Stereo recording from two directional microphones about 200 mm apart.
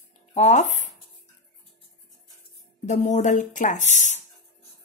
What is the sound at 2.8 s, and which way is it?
Speech, 35° left (ahead or behind).